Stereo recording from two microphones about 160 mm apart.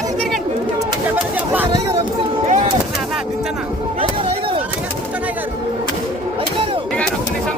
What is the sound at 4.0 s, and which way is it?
Chop, 35° right (ahead or behind).